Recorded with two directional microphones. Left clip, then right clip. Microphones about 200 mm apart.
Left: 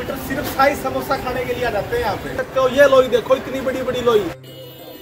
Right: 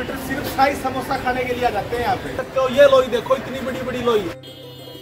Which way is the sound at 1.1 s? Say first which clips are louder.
Left 4 dB; 10° left (ahead or behind).